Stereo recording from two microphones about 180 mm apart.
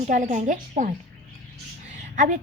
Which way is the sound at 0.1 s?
45° right (ahead or behind).